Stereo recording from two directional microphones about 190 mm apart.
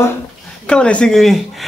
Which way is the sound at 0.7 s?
5° left (ahead or behind).